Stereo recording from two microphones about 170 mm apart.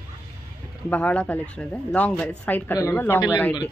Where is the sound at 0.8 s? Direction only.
10° left (ahead or behind).